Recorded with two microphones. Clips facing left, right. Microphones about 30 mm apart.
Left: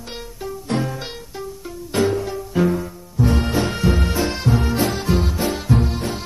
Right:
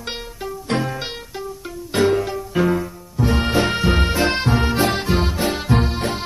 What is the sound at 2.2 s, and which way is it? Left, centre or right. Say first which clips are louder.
Music: even; right.